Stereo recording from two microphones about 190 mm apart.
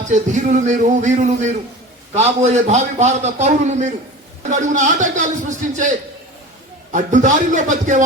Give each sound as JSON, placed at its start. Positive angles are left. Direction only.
{"t": 0.1, "sound": "a man's voice", "side_deg": -40}
{"t": 6.9, "sound": "a man's voice", "side_deg": -40}